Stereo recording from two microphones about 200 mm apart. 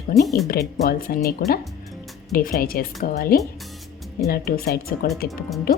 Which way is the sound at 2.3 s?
45° left (ahead or behind).